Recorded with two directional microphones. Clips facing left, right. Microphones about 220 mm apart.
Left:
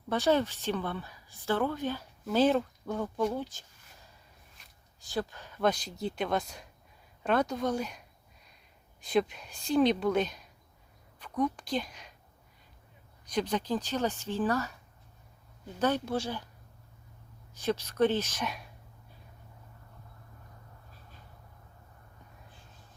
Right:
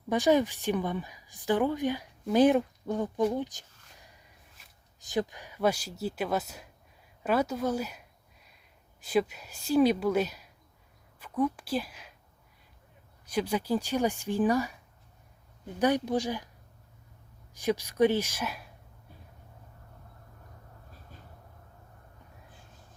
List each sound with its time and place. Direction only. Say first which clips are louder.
0.1 s a woman's voice: right 3 dB; 15° right (ahead or behind)
3.3 s a sound: right 3 dB; 15° right (ahead or behind)
4.9 s a woman's voice: right 3 dB; 20° right (ahead or behind)
13.2 s a woman's voice: right 1 dB; 5° right (ahead or behind)
15.8 s a woman's voice: right 3 dB; 15° right (ahead or behind)
17.5 s a woman's voice: right 2 dB; 15° right (ahead or behind)